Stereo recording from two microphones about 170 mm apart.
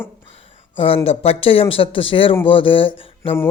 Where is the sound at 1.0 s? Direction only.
35° left (ahead or behind).